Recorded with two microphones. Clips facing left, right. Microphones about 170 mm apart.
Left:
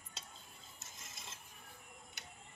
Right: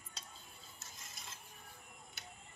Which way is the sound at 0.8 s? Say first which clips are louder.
Even; 20° left (ahead or behind).